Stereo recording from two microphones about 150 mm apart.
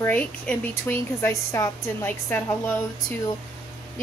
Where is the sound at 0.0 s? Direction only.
10° left (ahead or behind).